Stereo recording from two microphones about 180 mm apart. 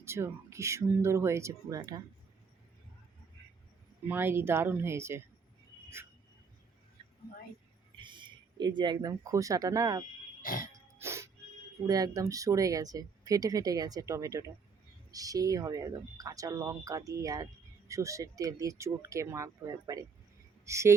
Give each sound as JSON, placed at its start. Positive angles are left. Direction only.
{"t": 0.0, "sound": "speech", "side_deg": -15}
{"t": 4.1, "sound": "speech", "side_deg": -10}
{"t": 7.9, "sound": "speech", "side_deg": -25}
{"t": 10.4, "sound": "cough", "side_deg": 50}
{"t": 11.0, "sound": "music", "side_deg": -15}
{"t": 11.9, "sound": "speech", "side_deg": -20}